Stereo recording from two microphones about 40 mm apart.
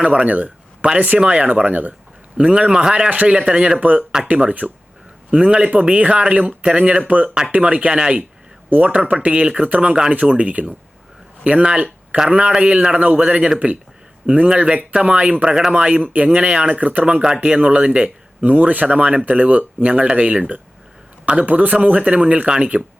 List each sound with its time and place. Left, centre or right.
0.0 s speech: right
0.3 s a sound: right
0.9 s speech: right
1.3 s speech: right
2.4 s speech: right
3.8 s speech: right
10.1 s speech: right
11.5 s speech: right
18.4 s speech: right